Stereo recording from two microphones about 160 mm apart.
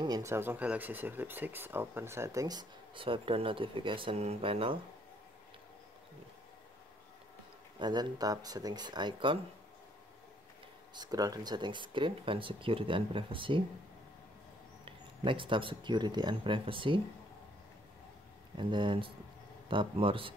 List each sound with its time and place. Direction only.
0.0 s speech: 20° right (ahead or behind)
7.8 s speech: 25° right (ahead or behind)
11.0 s speech: 25° right (ahead or behind)
14.9 s speech: 30° right (ahead or behind)
18.6 s speech: 30° right (ahead or behind)